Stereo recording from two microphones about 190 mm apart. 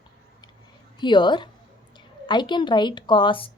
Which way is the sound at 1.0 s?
25° left (ahead or behind).